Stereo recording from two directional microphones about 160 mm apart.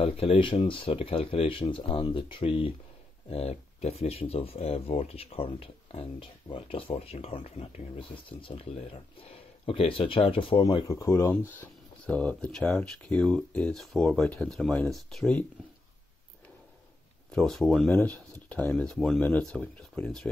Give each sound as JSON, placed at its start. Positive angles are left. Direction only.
{"t": 0.0, "sound": "speech", "side_deg": 35}
{"t": 17.3, "sound": "speech", "side_deg": 0}
{"t": 19.1, "sound": "speech", "side_deg": 15}